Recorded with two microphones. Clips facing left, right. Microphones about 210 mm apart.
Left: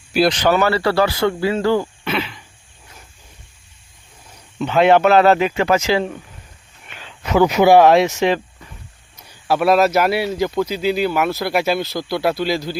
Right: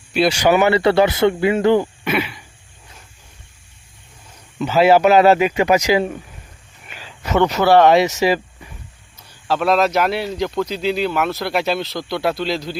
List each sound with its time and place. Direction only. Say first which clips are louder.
0.3 s speech: right 4 dB; 10° right (ahead or behind)
4.6 s a man's voice: even; 5° right (ahead or behind)
6.8 s a sound: even; 5° right (ahead or behind); by 7.9 s 10° left (ahead or behind)
7.9 s speech: even; centre (ahead or behind)
9.1 s speech: left 2 dB; 15° left (ahead or behind)